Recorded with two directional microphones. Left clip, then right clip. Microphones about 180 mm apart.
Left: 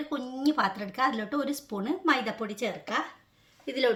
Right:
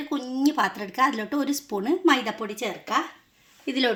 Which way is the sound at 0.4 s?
35° right (ahead or behind).